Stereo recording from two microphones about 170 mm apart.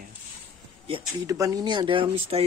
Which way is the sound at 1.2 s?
20° right (ahead or behind).